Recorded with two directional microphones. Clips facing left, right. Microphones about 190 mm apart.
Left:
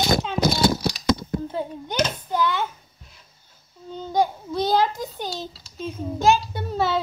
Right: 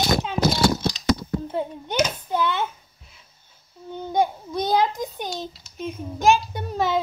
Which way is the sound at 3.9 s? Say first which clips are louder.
Even; 20° right (ahead or behind).